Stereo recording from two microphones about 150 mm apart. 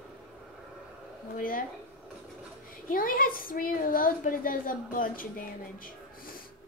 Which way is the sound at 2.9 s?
70° left (ahead or behind).